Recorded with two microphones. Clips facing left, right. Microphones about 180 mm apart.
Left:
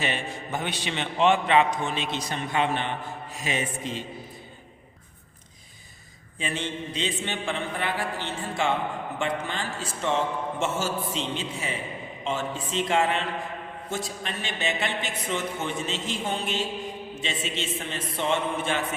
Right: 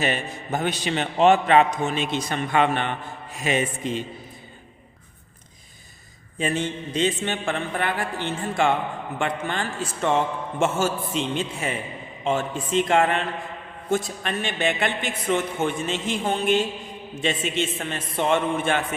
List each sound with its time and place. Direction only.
0.0 s a man's voice: 45° right (ahead or behind)
6.4 s a man's voice: 45° right (ahead or behind)